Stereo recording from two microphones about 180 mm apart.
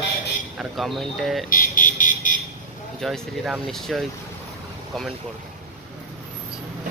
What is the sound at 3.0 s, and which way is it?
Speech, centre (ahead or behind).